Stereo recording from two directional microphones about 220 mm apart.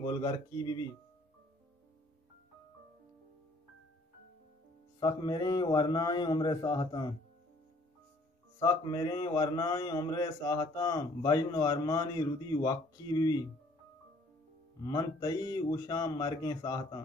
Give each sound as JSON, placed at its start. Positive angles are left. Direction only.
{"t": 0.0, "sound": "a man's voice", "side_deg": 20}
{"t": 5.0, "sound": "a man's voice", "side_deg": 20}
{"t": 8.5, "sound": "a man's voice", "side_deg": 15}
{"t": 14.8, "sound": "a man's voice", "side_deg": 15}